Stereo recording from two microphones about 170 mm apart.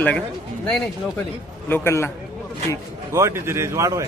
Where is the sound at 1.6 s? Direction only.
15° left (ahead or behind).